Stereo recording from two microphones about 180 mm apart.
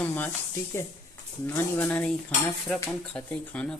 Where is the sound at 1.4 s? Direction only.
10° left (ahead or behind).